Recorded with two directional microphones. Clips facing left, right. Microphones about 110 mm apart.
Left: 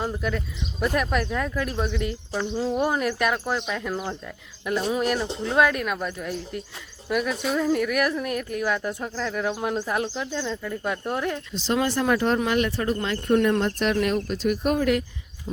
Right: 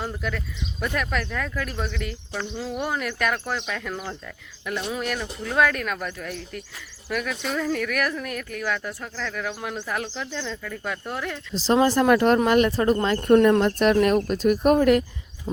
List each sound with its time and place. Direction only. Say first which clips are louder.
0.3 s speech: left 2 dB; 20° left (ahead or behind)
3.2 s speech: left 2 dB; 15° left (ahead or behind)
5.0 s speech: left 4 dB; 25° left (ahead or behind)
7.1 s speech: left 3 dB; 25° left (ahead or behind)
7.4 s speech: left 3 dB; 10° left (ahead or behind)
11.5 s speech: right 7 dB; 35° right (ahead or behind)
11.9 s speech: right 4 dB; 65° right (ahead or behind)
12.4 s speech: right 4 dB; 45° right (ahead or behind)